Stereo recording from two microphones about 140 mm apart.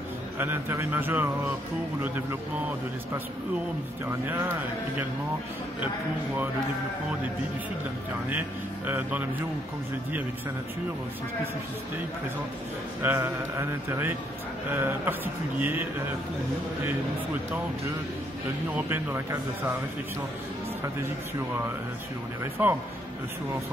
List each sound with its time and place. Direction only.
0.4 s speech: 15° right (ahead or behind)
8.3 s speech: 15° right (ahead or behind)
13.0 s speech: 15° right (ahead or behind)
18.8 s speech: 15° right (ahead or behind)
22.4 s speech: 15° right (ahead or behind)